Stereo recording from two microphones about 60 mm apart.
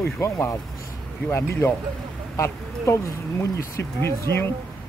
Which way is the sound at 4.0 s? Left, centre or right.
Left.